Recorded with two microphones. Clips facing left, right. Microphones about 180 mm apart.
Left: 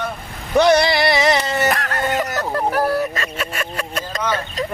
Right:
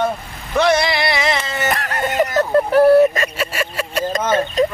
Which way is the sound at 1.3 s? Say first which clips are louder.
Left 3 dB; 40° left (ahead or behind).